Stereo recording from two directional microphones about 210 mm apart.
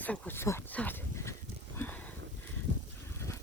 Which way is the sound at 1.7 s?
10° left (ahead or behind).